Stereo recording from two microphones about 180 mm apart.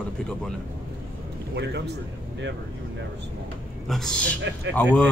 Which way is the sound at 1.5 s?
70° right (ahead or behind).